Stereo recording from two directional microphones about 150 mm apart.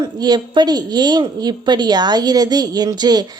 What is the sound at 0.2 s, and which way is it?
Speech, 30° right (ahead or behind).